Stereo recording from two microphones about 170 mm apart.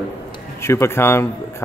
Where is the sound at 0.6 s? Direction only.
15° left (ahead or behind).